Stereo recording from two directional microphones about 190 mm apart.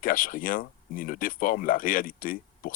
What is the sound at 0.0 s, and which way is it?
Speech, 45° left (ahead or behind).